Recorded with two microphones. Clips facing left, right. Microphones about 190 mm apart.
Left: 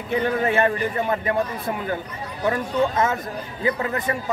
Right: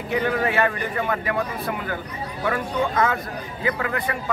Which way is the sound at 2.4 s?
25° left (ahead or behind).